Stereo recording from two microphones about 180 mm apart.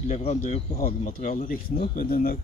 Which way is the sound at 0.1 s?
40° left (ahead or behind).